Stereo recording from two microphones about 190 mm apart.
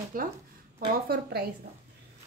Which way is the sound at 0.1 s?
50° right (ahead or behind).